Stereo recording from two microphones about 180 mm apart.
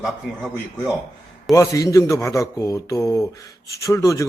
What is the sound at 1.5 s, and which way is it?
A man's voice, 20° left (ahead or behind).